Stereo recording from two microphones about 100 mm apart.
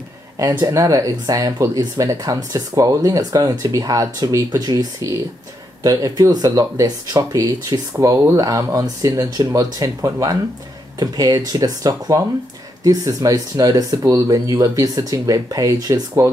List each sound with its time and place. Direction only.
0.4 s speech: 35° right (ahead or behind)